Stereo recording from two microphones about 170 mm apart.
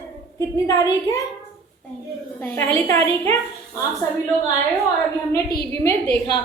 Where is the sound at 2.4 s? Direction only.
15° left (ahead or behind).